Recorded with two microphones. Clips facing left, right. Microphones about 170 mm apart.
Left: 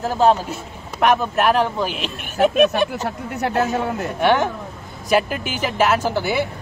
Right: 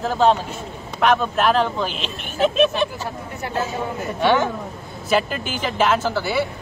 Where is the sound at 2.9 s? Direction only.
70° left (ahead or behind).